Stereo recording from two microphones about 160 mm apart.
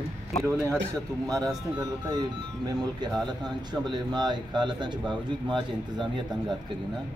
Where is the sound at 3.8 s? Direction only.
25° right (ahead or behind).